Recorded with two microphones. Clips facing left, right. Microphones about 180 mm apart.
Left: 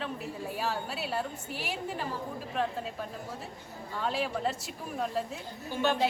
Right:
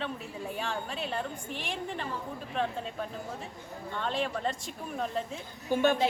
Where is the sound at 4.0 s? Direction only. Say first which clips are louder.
Left 1 dB; 5° left (ahead or behind).